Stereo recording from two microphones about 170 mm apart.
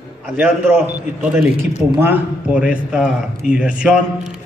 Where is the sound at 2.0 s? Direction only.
10° right (ahead or behind).